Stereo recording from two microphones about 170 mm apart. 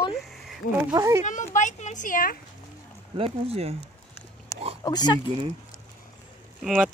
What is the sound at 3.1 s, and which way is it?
Speech, 35° right (ahead or behind).